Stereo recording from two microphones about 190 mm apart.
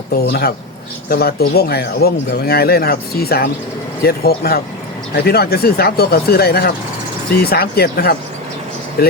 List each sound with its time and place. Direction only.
0.2 s speech: 55° left (ahead or behind)